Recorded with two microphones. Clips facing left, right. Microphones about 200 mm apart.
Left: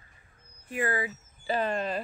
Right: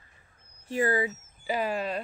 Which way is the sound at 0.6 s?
25° right (ahead or behind).